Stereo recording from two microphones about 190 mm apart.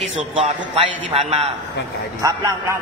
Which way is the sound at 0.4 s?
30° right (ahead or behind).